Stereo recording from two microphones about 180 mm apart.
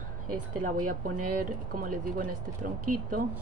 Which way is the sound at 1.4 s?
50° right (ahead or behind).